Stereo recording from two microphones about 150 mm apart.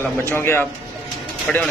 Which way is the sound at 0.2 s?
15° left (ahead or behind).